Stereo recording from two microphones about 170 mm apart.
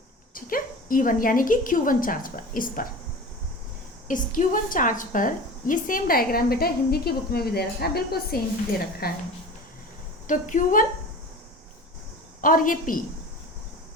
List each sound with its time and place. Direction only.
0.3 s a woman's voice: 55° left (ahead or behind)
4.1 s a woman's voice: 50° left (ahead or behind)
10.2 s a woman's voice: 50° left (ahead or behind)
12.4 s a woman's voice: 55° left (ahead or behind)